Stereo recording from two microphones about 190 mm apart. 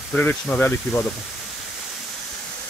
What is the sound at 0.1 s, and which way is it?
Speech, 5° left (ahead or behind).